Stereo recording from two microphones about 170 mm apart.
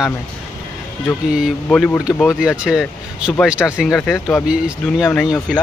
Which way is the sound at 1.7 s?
5° left (ahead or behind).